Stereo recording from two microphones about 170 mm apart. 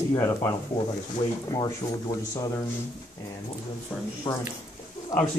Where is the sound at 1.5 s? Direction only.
20° left (ahead or behind).